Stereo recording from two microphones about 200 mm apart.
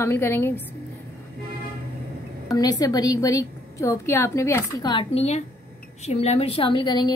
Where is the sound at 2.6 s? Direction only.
20° left (ahead or behind).